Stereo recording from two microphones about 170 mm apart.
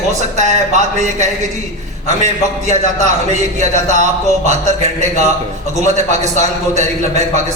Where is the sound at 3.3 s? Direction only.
45° right (ahead or behind).